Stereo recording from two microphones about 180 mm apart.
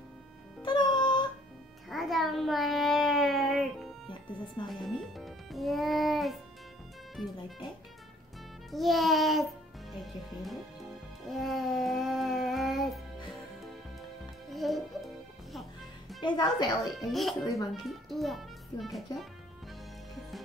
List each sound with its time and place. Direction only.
0.6 s music: 25° left (ahead or behind)
1.9 s a sound: centre (ahead or behind)
4.6 s music: centre (ahead or behind)
8.7 s music: centre (ahead or behind)
14.5 s music: centre (ahead or behind)
16.2 s a woman's voice: 25° left (ahead or behind)
17.0 s a child's voice: centre (ahead or behind)